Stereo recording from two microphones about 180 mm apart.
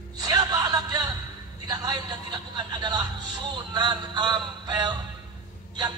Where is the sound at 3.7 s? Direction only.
25° right (ahead or behind).